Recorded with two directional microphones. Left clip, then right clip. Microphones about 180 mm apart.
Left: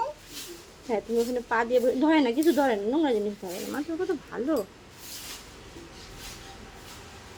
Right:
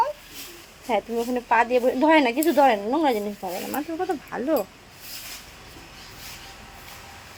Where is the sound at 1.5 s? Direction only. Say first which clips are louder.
Right 5 dB; 25° right (ahead or behind).